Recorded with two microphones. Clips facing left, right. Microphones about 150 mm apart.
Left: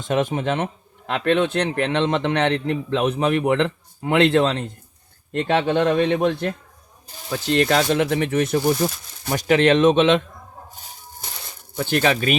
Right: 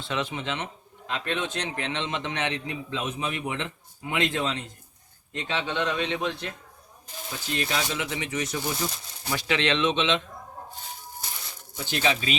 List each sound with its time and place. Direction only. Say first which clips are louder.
0.0 s a man's voice: left 9 dB; 45° left (ahead or behind)
7.3 s a man's voice: left 11 dB; 70° left (ahead or behind); by 10.2 s 50° left (ahead or behind)
11.8 s speech: left 7 dB; 55° left (ahead or behind)